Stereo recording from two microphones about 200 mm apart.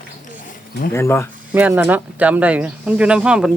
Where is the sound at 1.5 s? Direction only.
10° right (ahead or behind).